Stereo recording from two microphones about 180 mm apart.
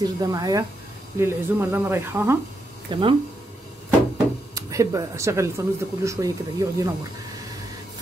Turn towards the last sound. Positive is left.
turn(degrees=-20)  # may be behind; listen again after turning